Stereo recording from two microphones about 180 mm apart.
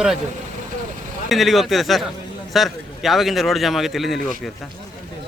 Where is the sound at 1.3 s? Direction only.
Centre (ahead or behind).